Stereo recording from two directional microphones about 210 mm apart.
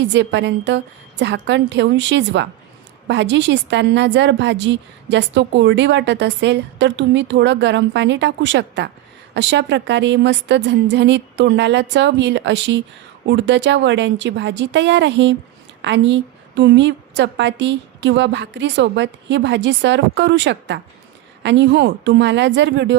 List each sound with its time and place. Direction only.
0.0 s a woman's voice: 55° right (ahead or behind)